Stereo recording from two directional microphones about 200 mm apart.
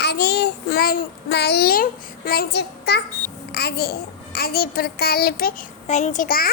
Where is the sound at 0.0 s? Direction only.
55° left (ahead or behind).